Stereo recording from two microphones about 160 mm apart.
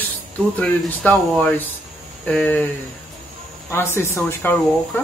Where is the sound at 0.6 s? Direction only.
10° left (ahead or behind).